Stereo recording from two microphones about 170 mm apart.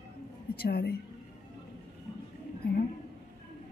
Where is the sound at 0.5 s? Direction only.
65° left (ahead or behind).